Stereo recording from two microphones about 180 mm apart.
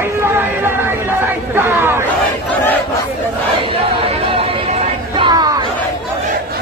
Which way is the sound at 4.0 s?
30° right (ahead or behind).